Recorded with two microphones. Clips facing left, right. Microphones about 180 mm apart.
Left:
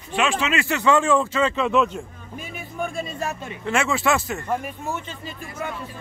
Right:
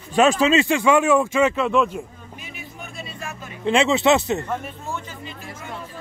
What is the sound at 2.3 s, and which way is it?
Music, 45° left (ahead or behind).